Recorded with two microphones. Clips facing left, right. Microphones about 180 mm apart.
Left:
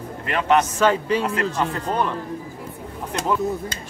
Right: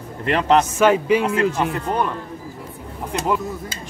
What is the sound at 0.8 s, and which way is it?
Speech, 10° right (ahead or behind).